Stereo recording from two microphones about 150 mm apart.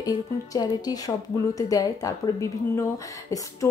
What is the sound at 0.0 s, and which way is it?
Speech, 25° left (ahead or behind).